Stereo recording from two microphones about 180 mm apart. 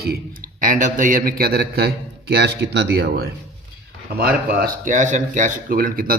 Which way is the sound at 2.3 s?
70° right (ahead or behind).